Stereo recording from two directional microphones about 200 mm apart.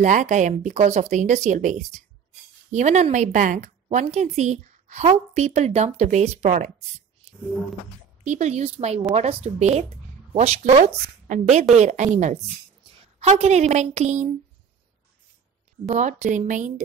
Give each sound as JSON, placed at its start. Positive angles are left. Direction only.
{"t": 0.0, "sound": "a woman's voice", "side_deg": -40}
{"t": 8.2, "sound": "a woman's voice", "side_deg": -35}
{"t": 15.9, "sound": "a woman's voice", "side_deg": -35}